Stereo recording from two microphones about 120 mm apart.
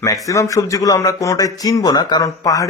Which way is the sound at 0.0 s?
25° left (ahead or behind).